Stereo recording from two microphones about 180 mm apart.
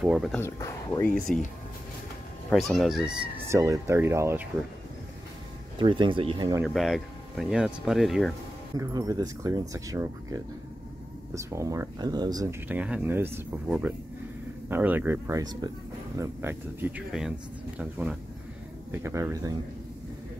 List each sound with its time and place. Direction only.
0.0 s speech: centre (ahead or behind)
0.4 s speech: 15° left (ahead or behind)
1.1 s speech: 5° left (ahead or behind)
2.5 s speech: centre (ahead or behind)
3.4 s speech: 15° right (ahead or behind)
5.8 s speech: 25° right (ahead or behind)
6.6 s speech: centre (ahead or behind)
8.7 s speech: 20° right (ahead or behind)
12.6 s speech: 5° right (ahead or behind)